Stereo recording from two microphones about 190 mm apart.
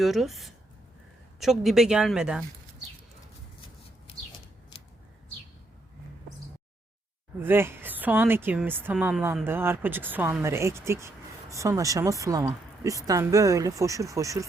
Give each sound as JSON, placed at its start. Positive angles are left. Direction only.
{"t": 0.0, "sound": "speech", "side_deg": 0}
{"t": 4.1, "sound": "a sound", "side_deg": 30}
{"t": 7.4, "sound": "a woman's voice", "side_deg": -10}